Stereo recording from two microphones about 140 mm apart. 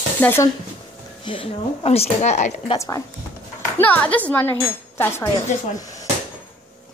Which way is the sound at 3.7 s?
10° left (ahead or behind).